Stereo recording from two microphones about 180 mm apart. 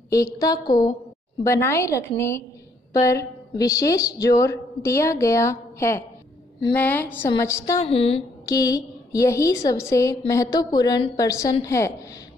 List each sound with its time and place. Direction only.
0.1 s a woman's voice: 20° left (ahead or behind)
7.8 s a woman's voice: 30° left (ahead or behind)
8.5 s a woman's voice: 20° left (ahead or behind)